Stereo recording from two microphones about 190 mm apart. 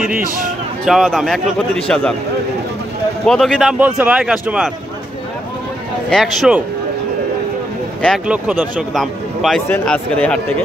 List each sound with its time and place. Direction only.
0.2 s a man's voice: 45° right (ahead or behind)
0.8 s speech: centre (ahead or behind)
3.3 s speech: 5° left (ahead or behind)
6.0 s speech: centre (ahead or behind)
8.0 s speech: centre (ahead or behind)